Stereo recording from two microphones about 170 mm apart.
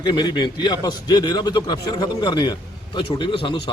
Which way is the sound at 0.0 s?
25° left (ahead or behind).